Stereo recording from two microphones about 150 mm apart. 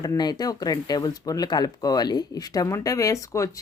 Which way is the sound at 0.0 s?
25° left (ahead or behind).